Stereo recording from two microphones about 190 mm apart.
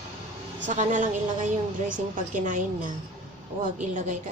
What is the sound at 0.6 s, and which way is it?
A woman's voice, 40° right (ahead or behind).